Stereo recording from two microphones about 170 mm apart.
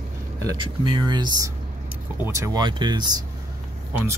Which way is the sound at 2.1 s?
15° right (ahead or behind).